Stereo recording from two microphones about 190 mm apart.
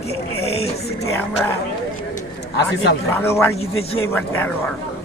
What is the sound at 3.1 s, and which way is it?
Speech, 10° left (ahead or behind).